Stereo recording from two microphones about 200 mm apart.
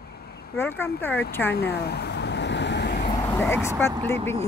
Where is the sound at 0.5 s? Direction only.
10° left (ahead or behind).